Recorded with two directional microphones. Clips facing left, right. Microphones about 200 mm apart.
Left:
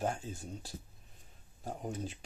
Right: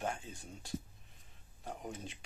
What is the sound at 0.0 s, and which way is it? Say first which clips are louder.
Speech: left 4 dB; 35° left (ahead or behind).